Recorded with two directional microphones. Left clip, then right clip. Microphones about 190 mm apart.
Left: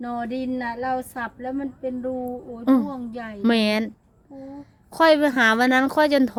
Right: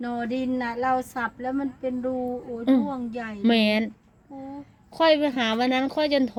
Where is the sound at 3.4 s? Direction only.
20° left (ahead or behind).